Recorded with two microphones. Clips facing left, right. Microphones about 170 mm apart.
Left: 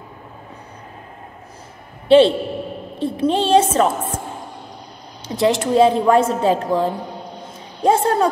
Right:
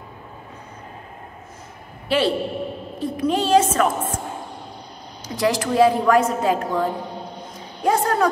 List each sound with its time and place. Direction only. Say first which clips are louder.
2.0 s a man's voice: left 9 dB; 25° left (ahead or behind)
5.2 s a woman's voice: left 4 dB; 25° left (ahead or behind)